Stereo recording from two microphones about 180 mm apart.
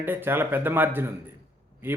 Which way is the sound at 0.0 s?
10° right (ahead or behind).